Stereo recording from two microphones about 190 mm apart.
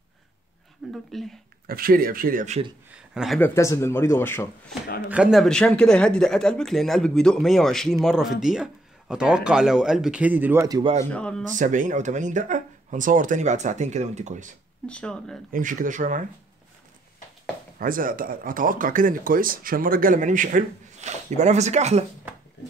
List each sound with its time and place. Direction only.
0.9 s a man's voice: centre (ahead or behind)
1.7 s speech: 50° right (ahead or behind)
2.9 s a sound: 5° right (ahead or behind)
3.3 s speech: 10° left (ahead or behind)
5.1 s a man's voice: 5° right (ahead or behind)
11.1 s a man's voice: 5° left (ahead or behind)
11.5 s speech: 40° right (ahead or behind)
14.9 s a man's voice: 5° left (ahead or behind)
15.5 s speech: 45° right (ahead or behind)
17.7 s speech: 45° right (ahead or behind)